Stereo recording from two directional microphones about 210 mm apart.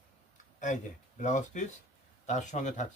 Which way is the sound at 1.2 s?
35° left (ahead or behind).